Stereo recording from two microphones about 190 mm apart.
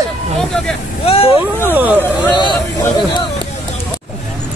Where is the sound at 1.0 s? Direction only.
30° left (ahead or behind).